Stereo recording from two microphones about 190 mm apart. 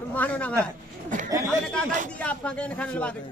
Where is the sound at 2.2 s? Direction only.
5° left (ahead or behind).